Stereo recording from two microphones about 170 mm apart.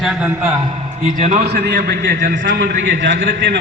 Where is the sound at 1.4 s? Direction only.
75° right (ahead or behind); by 2.4 s 55° right (ahead or behind).